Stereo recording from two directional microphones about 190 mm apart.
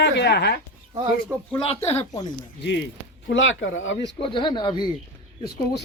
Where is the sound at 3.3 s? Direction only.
75° left (ahead or behind).